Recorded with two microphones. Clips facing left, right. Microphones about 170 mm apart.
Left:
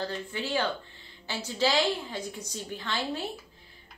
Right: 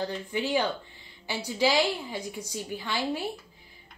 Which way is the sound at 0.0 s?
15° right (ahead or behind).